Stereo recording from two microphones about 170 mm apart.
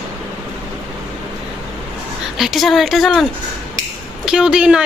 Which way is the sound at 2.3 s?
Centre (ahead or behind).